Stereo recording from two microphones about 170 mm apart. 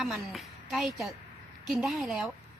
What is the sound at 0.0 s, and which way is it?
A woman's voice, centre (ahead or behind).